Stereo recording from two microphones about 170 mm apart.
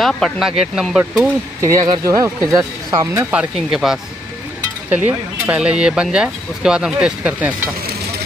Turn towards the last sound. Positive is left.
turn(degrees=-10)  # may be behind; listen again after turning